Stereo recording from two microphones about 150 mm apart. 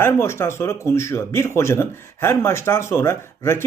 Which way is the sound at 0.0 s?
15° left (ahead or behind).